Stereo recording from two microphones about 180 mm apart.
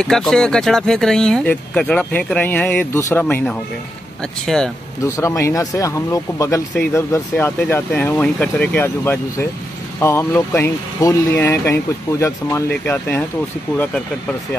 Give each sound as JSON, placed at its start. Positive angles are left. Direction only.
{"t": 0.0, "sound": "speech", "side_deg": 5}
{"t": 5.0, "sound": "speech", "side_deg": 15}